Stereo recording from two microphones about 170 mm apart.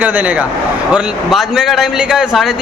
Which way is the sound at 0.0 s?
10° right (ahead or behind).